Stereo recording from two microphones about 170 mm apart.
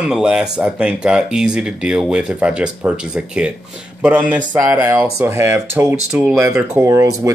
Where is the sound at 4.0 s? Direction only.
5° right (ahead or behind).